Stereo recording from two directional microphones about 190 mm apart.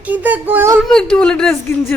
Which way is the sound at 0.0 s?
10° right (ahead or behind).